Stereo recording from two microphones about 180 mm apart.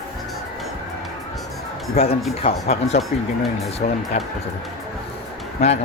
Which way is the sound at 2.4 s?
35° left (ahead or behind).